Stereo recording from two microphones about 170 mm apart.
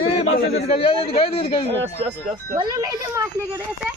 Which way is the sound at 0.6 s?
35° left (ahead or behind).